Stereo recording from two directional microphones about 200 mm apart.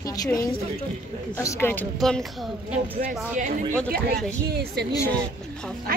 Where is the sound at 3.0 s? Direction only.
45° right (ahead or behind).